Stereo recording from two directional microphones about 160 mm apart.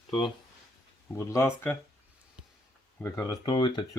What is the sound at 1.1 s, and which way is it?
Speech, 15° left (ahead or behind).